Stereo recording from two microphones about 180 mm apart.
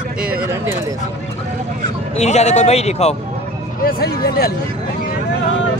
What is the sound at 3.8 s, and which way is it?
Speech, 55° left (ahead or behind).